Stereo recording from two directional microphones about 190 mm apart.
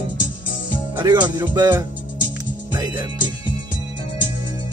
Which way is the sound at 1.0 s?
20° right (ahead or behind).